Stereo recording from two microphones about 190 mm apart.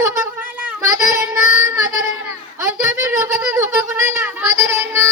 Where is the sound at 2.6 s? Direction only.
15° right (ahead or behind).